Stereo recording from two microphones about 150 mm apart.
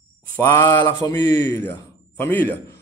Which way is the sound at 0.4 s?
15° left (ahead or behind).